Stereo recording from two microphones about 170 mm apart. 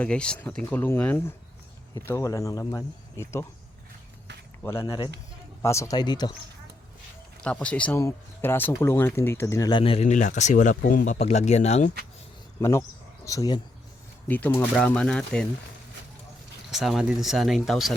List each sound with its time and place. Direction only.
0.0 s speech: 5° left (ahead or behind)
4.6 s speech: 15° left (ahead or behind)
7.4 s speech: 5° left (ahead or behind); by 11.9 s 40° left (ahead or behind)
12.5 s speech: 20° left (ahead or behind)
14.3 s speech: 10° left (ahead or behind)
16.7 s speech: centre (ahead or behind)